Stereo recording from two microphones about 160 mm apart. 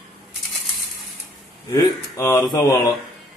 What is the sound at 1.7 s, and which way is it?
Speech, 20° left (ahead or behind).